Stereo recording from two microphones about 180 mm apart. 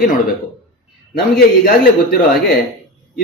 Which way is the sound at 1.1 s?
55° left (ahead or behind).